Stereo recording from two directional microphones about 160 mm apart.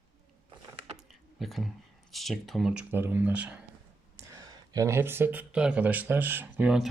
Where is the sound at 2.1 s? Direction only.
Centre (ahead or behind).